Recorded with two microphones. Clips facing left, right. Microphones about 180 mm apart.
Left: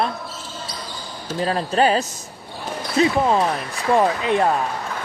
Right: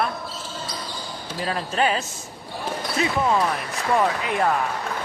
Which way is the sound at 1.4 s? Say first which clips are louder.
Left 5 dB; 35° left (ahead or behind).